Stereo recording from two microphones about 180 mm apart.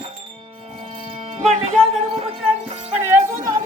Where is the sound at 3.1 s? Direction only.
15° right (ahead or behind).